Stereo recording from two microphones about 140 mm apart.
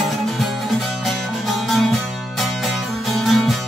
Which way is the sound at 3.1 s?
Centre (ahead or behind).